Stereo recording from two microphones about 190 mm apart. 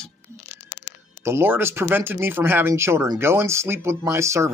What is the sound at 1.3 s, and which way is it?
Speech, 10° right (ahead or behind).